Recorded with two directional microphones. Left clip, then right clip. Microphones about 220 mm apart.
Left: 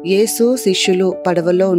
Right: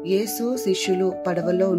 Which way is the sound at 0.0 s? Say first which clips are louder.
Left 10 dB; 40° left (ahead or behind).